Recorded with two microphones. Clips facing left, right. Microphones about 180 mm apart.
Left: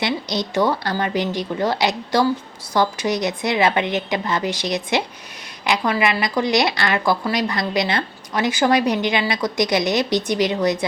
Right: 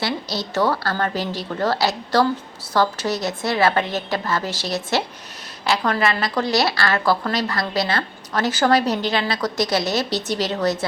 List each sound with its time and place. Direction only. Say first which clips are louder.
0.0 s a woman's voice: left 2 dB; 20° left (ahead or behind)